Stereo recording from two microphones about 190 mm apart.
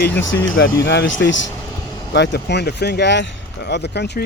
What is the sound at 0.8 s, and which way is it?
Speech, 75° left (ahead or behind).